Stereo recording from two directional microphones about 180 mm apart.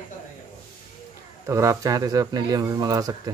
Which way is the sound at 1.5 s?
15° right (ahead or behind).